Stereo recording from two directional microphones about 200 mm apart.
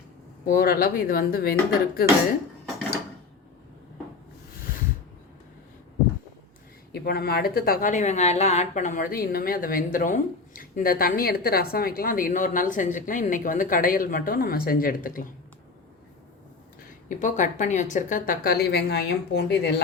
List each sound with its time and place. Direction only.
0.4 s speech: 45° left (ahead or behind)
6.9 s speech: 50° left (ahead or behind)
17.1 s speech: 40° left (ahead or behind); by 19.7 s 55° left (ahead or behind)